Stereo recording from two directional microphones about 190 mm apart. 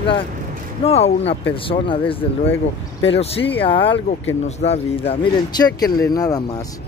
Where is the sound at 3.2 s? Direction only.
30° left (ahead or behind).